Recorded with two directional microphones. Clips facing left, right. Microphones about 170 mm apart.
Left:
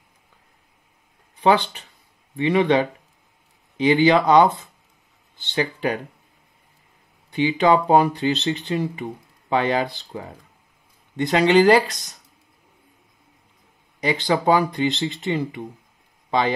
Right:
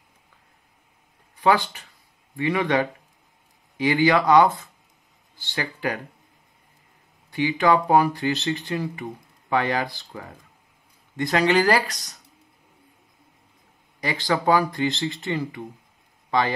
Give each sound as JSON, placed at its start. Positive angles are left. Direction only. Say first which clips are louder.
{"t": 1.4, "sound": "speech", "louder": "left 2 dB", "side_deg": 25}
{"t": 7.2, "sound": "speech", "louder": "left 2 dB", "side_deg": 20}
{"t": 14.0, "sound": "speech", "louder": "left 3 dB", "side_deg": 20}